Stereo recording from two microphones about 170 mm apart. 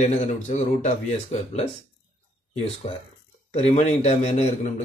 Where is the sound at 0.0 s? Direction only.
45° left (ahead or behind).